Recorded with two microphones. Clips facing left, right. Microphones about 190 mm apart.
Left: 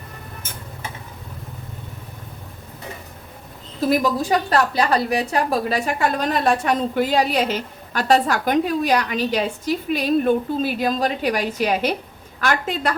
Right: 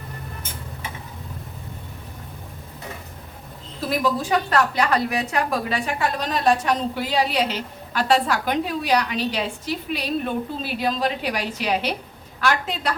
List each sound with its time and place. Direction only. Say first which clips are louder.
3.8 s a woman's voice: left 4 dB; 40° left (ahead or behind)